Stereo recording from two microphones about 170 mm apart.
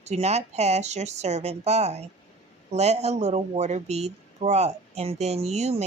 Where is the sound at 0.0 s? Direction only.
40° right (ahead or behind).